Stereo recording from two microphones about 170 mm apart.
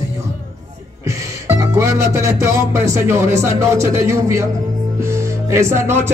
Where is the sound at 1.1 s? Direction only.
20° right (ahead or behind).